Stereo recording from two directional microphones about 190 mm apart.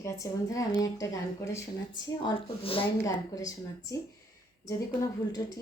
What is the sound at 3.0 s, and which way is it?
Speech, 20° left (ahead or behind).